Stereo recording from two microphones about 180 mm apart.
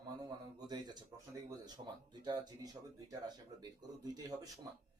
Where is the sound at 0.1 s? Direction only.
20° right (ahead or behind).